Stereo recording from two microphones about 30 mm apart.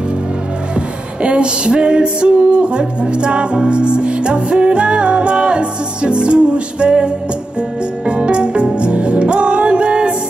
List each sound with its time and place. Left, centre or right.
0.7 s music: right
8.1 s music: right